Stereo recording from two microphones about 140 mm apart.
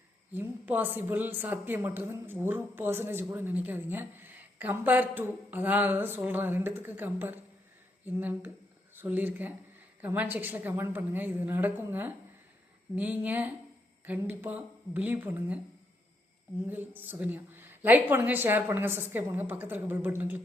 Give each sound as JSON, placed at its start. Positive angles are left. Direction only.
{"t": 0.3, "sound": "a woman's voice", "side_deg": -15}
{"t": 16.6, "sound": "a woman's voice", "side_deg": -15}